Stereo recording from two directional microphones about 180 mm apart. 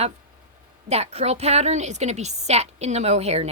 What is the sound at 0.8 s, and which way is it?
A woman's voice, 35° right (ahead or behind).